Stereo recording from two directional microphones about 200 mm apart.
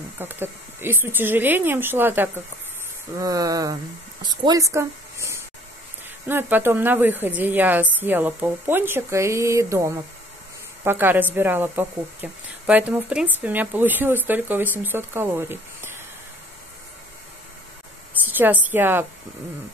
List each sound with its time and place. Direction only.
0.2 s a woman's voice: 10° right (ahead or behind)
18.2 s a woman's voice: 10° right (ahead or behind)